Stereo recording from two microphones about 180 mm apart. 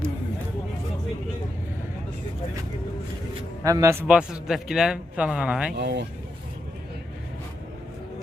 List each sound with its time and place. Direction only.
3.6 s a man's voice: 20° right (ahead or behind)
4.0 s speech: 5° right (ahead or behind)
5.7 s speech: 70° right (ahead or behind)